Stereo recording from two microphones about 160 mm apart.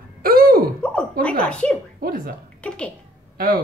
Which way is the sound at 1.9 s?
65° right (ahead or behind).